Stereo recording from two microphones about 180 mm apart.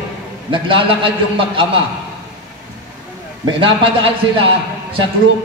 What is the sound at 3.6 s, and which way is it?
Speech, 30° right (ahead or behind).